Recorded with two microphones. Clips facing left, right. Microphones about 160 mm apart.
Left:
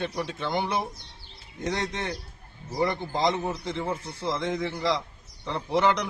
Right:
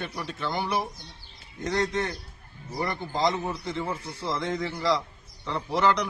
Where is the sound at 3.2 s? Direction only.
20° left (ahead or behind).